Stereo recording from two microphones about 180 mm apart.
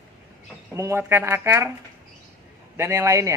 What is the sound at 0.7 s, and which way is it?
Speech, 15° right (ahead or behind).